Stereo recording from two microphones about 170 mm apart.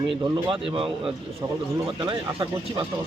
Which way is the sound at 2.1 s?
25° right (ahead or behind).